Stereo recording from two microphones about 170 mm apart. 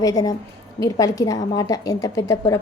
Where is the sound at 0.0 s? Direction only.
20° left (ahead or behind).